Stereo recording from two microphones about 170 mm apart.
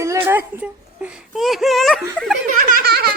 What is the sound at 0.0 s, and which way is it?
A child's voice, 15° right (ahead or behind).